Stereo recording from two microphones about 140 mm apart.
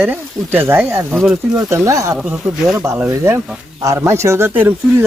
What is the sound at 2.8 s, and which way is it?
Speech, 20° right (ahead or behind).